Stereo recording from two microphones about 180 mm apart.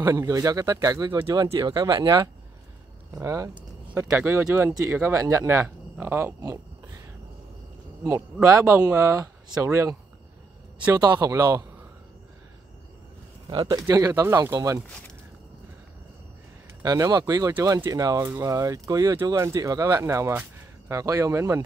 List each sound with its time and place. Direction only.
0.0 s speech: 20° right (ahead or behind)
8.6 s speech: 15° right (ahead or behind)
11.0 s speech: 20° right (ahead or behind)
13.5 s speech: 25° right (ahead or behind)
16.8 s speech: 20° right (ahead or behind)